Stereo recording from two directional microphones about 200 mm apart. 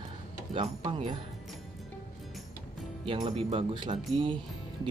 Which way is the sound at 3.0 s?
25° right (ahead or behind).